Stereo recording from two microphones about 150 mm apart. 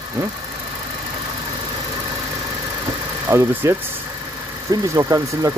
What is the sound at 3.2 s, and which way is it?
Speech, 15° right (ahead or behind).